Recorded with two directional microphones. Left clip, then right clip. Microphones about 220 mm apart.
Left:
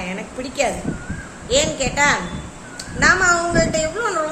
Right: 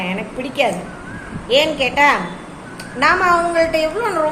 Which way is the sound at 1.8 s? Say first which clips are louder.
Right 4 dB; 15° left (ahead or behind).